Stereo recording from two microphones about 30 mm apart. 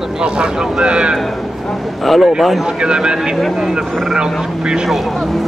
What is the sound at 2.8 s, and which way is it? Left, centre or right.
Speech, right.